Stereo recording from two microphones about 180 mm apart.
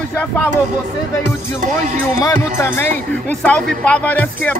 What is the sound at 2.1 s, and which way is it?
Speech, 15° left (ahead or behind).